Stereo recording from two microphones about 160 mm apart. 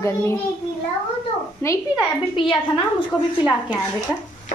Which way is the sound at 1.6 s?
20° left (ahead or behind).